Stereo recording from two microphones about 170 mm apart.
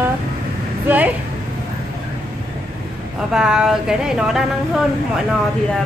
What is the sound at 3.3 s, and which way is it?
Speech, 5° right (ahead or behind).